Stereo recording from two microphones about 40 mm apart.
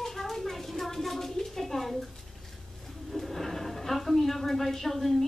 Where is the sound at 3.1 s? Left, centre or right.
Centre.